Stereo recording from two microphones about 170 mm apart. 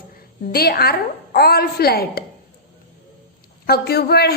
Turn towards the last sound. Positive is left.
turn(degrees=70)  # may be behind; listen again after turning